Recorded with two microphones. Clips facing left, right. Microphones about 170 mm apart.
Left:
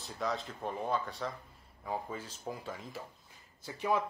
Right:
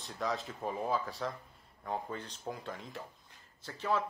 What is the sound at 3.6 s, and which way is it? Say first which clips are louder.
Speech: left 1 dB; 15° left (ahead or behind).